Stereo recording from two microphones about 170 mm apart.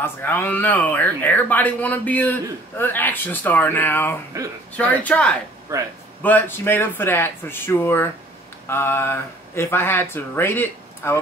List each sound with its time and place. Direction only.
0.0 s speech: 10° left (ahead or behind)
5.7 s a man's voice: 20° right (ahead or behind)
6.2 s speech: 10° left (ahead or behind)